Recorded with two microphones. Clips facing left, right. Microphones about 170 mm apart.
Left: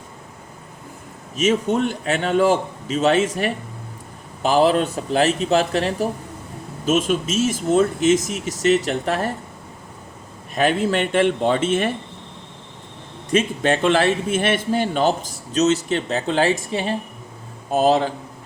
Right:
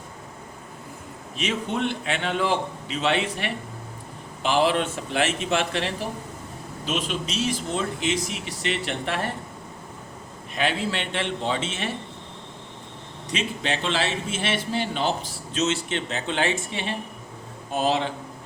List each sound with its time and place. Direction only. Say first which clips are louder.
1.4 s a man's voice: left 8 dB; 40° left (ahead or behind)
10.5 s a man's voice: left 7 dB; 45° left (ahead or behind)
13.3 s a man's voice: left 9 dB; 50° left (ahead or behind)